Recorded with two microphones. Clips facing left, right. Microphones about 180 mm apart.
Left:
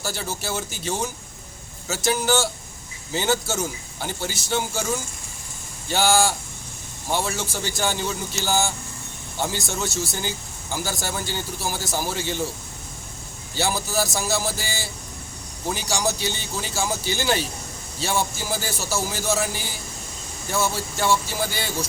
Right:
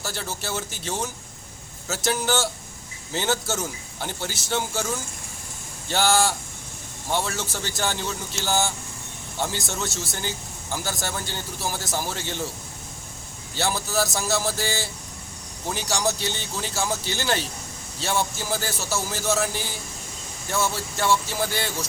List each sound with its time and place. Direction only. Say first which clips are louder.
0.0 s speech: left 2 dB; 5° left (ahead or behind)
2.0 s speech: left 2 dB; 5° left (ahead or behind)
5.9 s speech: left 1 dB; 5° left (ahead or behind)
13.6 s speech: left 1 dB; 5° left (ahead or behind)
20.5 s speech: left 1 dB; 5° left (ahead or behind)